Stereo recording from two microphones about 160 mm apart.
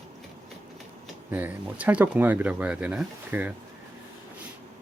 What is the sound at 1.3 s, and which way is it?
Speech, 10° right (ahead or behind).